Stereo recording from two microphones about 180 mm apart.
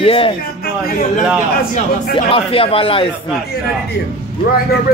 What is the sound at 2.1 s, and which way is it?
Speech, 30° left (ahead or behind).